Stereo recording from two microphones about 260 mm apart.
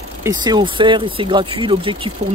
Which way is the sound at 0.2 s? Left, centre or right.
Centre.